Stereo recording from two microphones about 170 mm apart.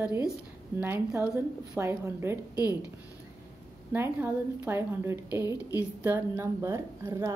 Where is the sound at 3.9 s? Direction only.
15° right (ahead or behind).